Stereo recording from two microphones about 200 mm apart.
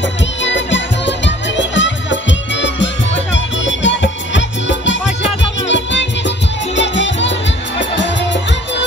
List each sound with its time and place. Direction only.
0.4 s music: 65° left (ahead or behind)